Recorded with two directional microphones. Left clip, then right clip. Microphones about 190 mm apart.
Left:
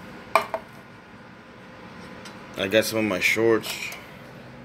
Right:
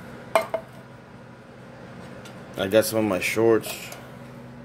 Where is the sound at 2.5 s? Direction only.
10° right (ahead or behind).